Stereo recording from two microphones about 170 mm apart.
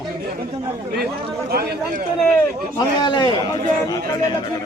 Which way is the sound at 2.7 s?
25° left (ahead or behind).